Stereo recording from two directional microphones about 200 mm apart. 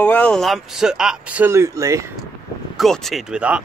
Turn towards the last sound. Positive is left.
turn(degrees=-5)  # may be behind; listen again after turning